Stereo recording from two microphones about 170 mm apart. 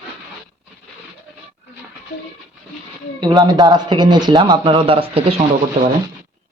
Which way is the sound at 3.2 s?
25° right (ahead or behind).